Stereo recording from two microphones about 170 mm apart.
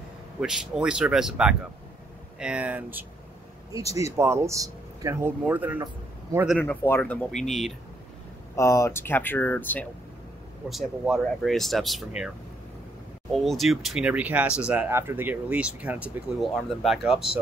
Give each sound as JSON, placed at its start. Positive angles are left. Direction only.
{"t": 0.4, "sound": "speech", "side_deg": -5}
{"t": 6.6, "sound": "speech", "side_deg": 15}
{"t": 8.5, "sound": "speech", "side_deg": 15}
{"t": 10.7, "sound": "speech", "side_deg": 0}
{"t": 13.3, "sound": "speech", "side_deg": 0}